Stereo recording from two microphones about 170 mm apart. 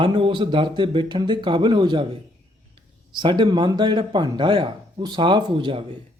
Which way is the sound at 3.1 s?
25° right (ahead or behind).